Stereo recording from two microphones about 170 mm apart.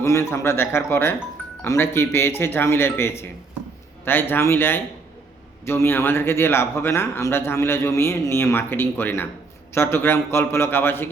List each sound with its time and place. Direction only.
0.0 s speech: 15° left (ahead or behind)